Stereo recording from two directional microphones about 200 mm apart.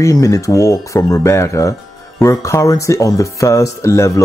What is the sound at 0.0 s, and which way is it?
Speech, 15° left (ahead or behind).